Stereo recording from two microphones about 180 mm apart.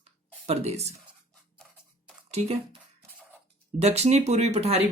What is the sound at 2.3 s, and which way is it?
Speech, 35° right (ahead or behind).